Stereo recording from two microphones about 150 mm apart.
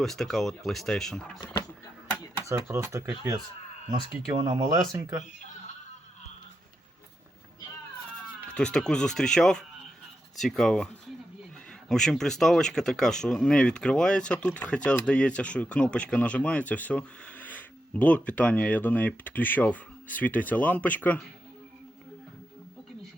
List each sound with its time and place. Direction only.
0.0 s speech: centre (ahead or behind)
2.4 s speech: 20° right (ahead or behind)
4.9 s speech: 25° right (ahead or behind)
5.2 s a sound: 55° left (ahead or behind)
8.4 s speech: 5° left (ahead or behind)